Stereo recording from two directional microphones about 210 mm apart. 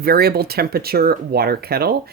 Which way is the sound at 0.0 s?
45° right (ahead or behind).